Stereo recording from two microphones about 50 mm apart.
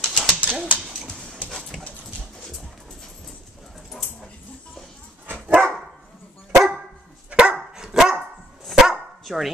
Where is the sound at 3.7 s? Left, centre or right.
Centre.